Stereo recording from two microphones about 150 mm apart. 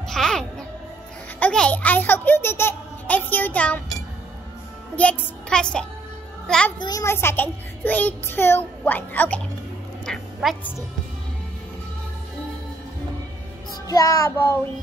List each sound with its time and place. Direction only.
0.1 s music: 5° left (ahead or behind)
1.4 s a child's voice: 10° left (ahead or behind)
4.9 s a child's voice: 5° left (ahead or behind)
6.8 s a child's voice: 25° left (ahead or behind); by 10.6 s centre (ahead or behind)
13.8 s child singing: 25° left (ahead or behind)